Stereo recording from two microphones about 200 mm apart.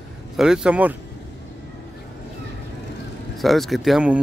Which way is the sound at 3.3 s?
Centre (ahead or behind).